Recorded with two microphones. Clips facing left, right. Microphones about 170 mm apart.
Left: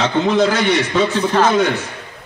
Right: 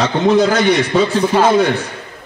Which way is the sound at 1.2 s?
10° right (ahead or behind).